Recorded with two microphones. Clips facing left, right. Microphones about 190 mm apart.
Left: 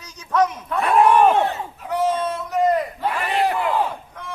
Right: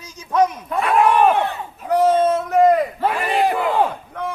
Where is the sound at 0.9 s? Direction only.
35° left (ahead or behind).